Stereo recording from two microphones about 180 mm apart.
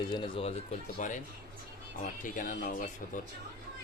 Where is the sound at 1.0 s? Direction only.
40° left (ahead or behind).